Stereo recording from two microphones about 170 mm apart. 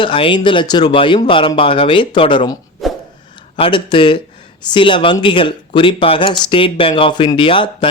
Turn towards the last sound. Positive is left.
turn(degrees=30)  # may be behind; listen again after turning